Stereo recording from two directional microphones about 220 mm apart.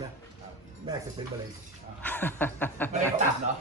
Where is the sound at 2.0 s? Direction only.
10° left (ahead or behind).